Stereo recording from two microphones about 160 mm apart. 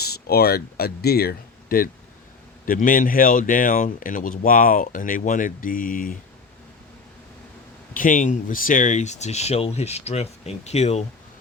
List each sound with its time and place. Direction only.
0.0 s speech: 80° left
2.6 s speech: 60° left (ahead or behind)
7.9 s speech: 55° left (ahead or behind)